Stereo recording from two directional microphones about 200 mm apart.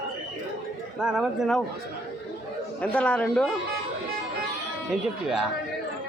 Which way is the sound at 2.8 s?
5° left (ahead or behind).